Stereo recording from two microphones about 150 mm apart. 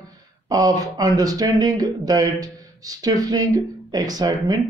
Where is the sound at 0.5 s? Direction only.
25° right (ahead or behind).